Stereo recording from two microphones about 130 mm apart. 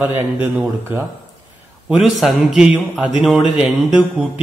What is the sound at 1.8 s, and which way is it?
Speech, 5° right (ahead or behind).